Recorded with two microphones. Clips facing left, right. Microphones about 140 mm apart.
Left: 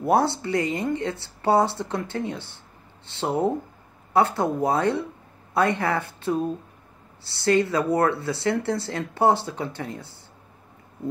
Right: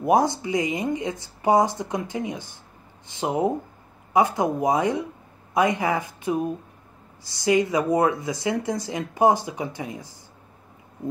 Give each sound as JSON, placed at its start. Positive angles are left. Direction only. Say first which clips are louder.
{"t": 0.0, "sound": "speech", "louder": "right 1 dB", "side_deg": -15}